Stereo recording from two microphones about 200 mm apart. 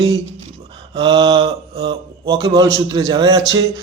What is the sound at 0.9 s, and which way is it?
A man's voice, 25° right (ahead or behind).